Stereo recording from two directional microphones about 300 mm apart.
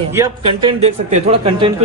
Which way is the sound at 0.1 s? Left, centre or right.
Centre.